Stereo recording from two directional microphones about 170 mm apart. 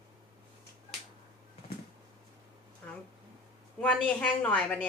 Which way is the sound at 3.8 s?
5° left (ahead or behind).